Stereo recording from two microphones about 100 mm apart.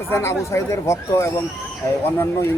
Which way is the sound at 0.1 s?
25° left (ahead or behind).